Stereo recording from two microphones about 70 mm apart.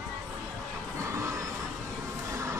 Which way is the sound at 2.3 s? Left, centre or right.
Right.